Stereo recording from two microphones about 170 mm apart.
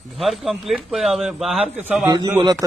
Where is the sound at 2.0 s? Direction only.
25° right (ahead or behind).